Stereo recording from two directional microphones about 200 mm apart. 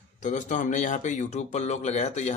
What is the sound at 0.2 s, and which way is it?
A man's voice, 40° left (ahead or behind).